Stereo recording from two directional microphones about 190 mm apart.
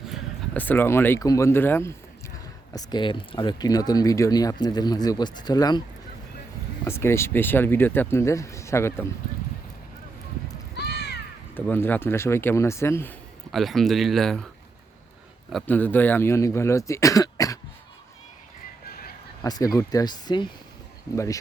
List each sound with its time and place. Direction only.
0.5 s speech: 10° left (ahead or behind)
2.7 s speech: 25° left (ahead or behind)
6.8 s speech: 15° left (ahead or behind)
10.8 s a sound: 60° left (ahead or behind)
11.5 s speech: 10° left (ahead or behind)
13.5 s speech: centre (ahead or behind)
15.5 s speech: 10° left (ahead or behind)
18.9 s a sound: 50° left (ahead or behind)
19.4 s speech: 20° left (ahead or behind)